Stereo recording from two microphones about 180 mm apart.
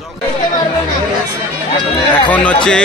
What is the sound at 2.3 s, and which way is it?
Speech, 5° left (ahead or behind).